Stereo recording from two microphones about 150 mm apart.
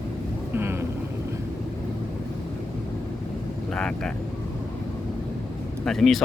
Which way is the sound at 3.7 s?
5° left (ahead or behind).